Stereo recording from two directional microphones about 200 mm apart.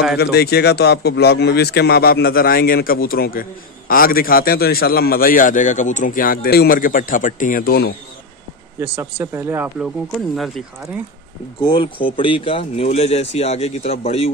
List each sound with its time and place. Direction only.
0.2 s a man's voice: 50° left (ahead or behind)
8.7 s speech: 10° right (ahead or behind)
10.3 s speech: centre (ahead or behind)
11.6 s speech: 25° left (ahead or behind)